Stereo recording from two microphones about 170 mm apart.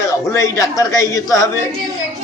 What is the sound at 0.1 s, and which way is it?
A man's voice, 20° left (ahead or behind).